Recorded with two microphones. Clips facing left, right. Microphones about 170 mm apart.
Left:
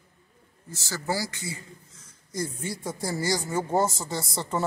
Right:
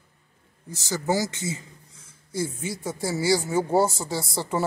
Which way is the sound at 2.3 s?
5° right (ahead or behind).